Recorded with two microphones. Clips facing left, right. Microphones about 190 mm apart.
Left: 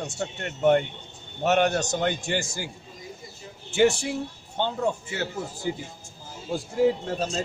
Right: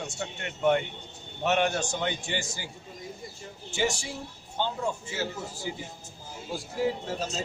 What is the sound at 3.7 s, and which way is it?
Speech, 60° left (ahead or behind).